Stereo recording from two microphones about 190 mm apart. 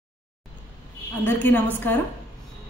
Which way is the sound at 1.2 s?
10° left (ahead or behind).